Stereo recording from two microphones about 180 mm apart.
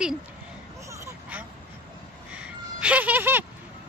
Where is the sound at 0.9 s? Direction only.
10° right (ahead or behind).